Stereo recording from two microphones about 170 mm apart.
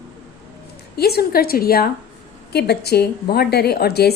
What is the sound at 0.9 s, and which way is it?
A woman's voice, 70° left (ahead or behind).